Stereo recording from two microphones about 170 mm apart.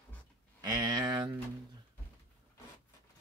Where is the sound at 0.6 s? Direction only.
25° right (ahead or behind).